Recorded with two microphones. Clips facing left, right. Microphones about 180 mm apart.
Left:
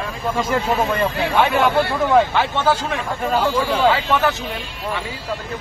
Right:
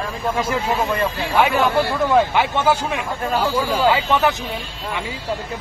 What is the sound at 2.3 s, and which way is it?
Speech, 10° right (ahead or behind).